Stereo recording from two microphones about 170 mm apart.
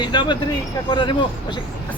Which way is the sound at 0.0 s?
25° left (ahead or behind).